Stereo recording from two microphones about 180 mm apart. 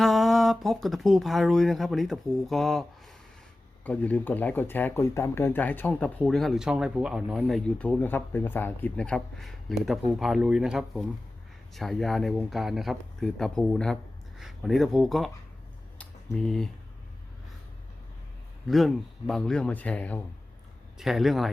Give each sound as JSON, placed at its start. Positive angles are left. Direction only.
{"t": 0.0, "sound": "speech", "side_deg": 0}
{"t": 3.8, "sound": "speech", "side_deg": 10}
{"t": 16.0, "sound": "a sound", "side_deg": 5}
{"t": 18.7, "sound": "speech", "side_deg": 0}